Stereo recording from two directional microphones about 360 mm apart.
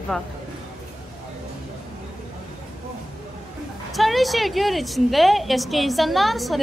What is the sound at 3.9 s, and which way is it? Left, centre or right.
A woman's voice, centre.